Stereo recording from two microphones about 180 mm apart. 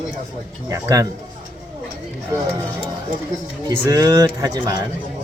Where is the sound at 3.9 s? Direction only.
20° right (ahead or behind).